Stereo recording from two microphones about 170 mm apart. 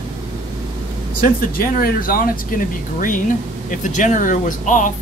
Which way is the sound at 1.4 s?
60° left (ahead or behind).